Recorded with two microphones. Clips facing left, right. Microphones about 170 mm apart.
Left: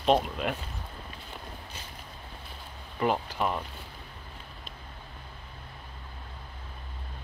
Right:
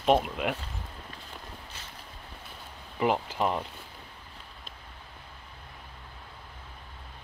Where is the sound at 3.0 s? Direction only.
20° right (ahead or behind).